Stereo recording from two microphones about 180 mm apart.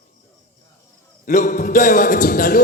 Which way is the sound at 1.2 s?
45° left (ahead or behind).